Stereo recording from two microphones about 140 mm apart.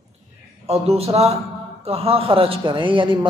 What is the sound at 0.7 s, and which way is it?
A man's voice, 45° right (ahead or behind).